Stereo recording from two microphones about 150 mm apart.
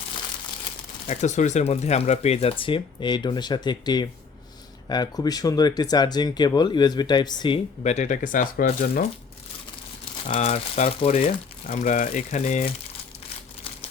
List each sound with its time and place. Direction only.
1.0 s speech: 50° left (ahead or behind); by 7.6 s 30° left (ahead or behind)
7.9 s speech: 55° left (ahead or behind); by 9.0 s 75° left (ahead or behind)
10.2 s speech: 45° left (ahead or behind)